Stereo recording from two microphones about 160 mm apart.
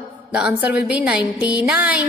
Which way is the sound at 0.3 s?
5° right (ahead or behind).